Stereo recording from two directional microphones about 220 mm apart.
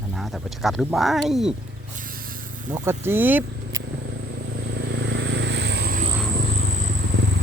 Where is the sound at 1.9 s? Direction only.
40° right (ahead or behind).